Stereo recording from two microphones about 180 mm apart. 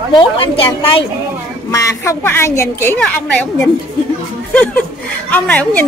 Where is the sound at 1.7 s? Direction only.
15° left (ahead or behind).